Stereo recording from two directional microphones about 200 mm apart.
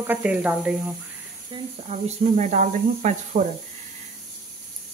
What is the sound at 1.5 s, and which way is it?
Speech, 25° right (ahead or behind).